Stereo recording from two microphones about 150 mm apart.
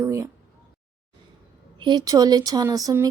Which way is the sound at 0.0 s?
20° right (ahead or behind).